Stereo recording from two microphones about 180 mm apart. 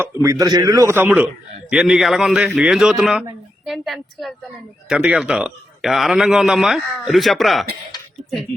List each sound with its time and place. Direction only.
0.0 s a man's voice: 15° right (ahead or behind); by 7.7 s centre (ahead or behind)